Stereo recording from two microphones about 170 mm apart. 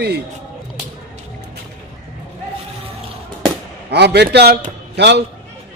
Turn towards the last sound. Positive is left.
turn(degrees=-80)